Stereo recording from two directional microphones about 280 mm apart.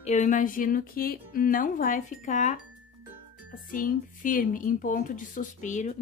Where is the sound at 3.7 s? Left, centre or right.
Left.